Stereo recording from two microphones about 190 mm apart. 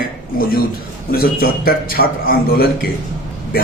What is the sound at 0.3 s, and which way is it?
A man's voice, 50° left (ahead or behind).